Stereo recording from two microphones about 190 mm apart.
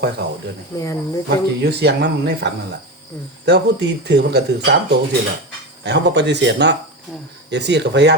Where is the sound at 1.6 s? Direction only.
60° right (ahead or behind).